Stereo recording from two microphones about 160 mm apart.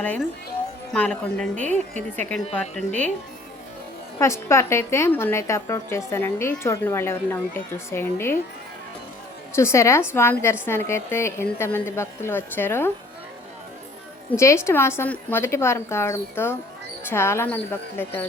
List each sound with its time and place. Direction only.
0.0 s a woman's voice: 10° left (ahead or behind)
1.7 s a woman's voice: 50° right (ahead or behind)
2.1 s a woman's voice: 5° left (ahead or behind)
4.2 s a woman's voice: 15° left (ahead or behind)
9.6 s a woman's voice: 15° left (ahead or behind)
14.3 s a woman's voice: 15° left (ahead or behind)